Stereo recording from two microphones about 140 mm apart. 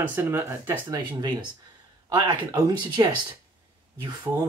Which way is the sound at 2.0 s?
30° right (ahead or behind).